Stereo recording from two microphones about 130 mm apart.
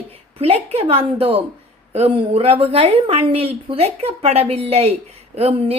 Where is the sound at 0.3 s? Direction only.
50° right (ahead or behind).